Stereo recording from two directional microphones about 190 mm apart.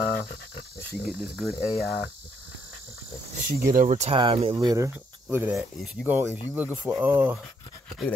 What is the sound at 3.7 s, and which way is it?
Speech, 40° right (ahead or behind).